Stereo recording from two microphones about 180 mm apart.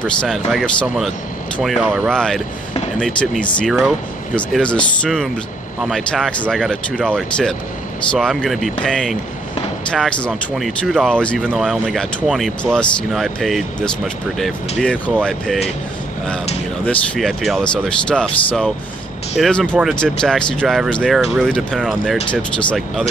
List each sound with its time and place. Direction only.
0.0 s speech: 5° left (ahead or behind)
16.8 s speech: 5° left (ahead or behind)